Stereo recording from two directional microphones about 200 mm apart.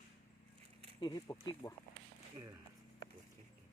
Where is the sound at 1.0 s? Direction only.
20° left (ahead or behind).